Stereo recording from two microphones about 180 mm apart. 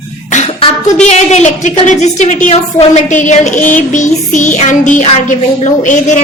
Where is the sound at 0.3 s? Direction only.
40° left (ahead or behind).